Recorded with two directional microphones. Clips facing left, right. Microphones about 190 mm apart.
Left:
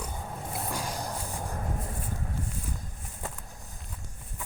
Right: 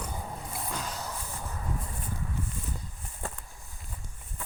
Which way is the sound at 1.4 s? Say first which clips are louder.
Left 3 dB; 45° left (ahead or behind).